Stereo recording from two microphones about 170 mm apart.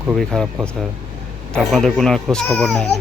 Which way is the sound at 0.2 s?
5° left (ahead or behind).